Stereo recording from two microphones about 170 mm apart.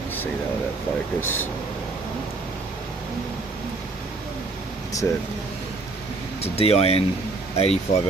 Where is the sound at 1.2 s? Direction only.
10° left (ahead or behind).